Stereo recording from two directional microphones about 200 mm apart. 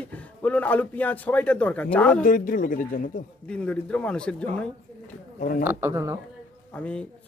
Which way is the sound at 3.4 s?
5° left (ahead or behind).